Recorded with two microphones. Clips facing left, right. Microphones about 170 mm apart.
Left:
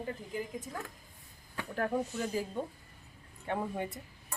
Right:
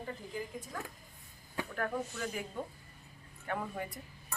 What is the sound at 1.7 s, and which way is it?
Speech, 30° left (ahead or behind).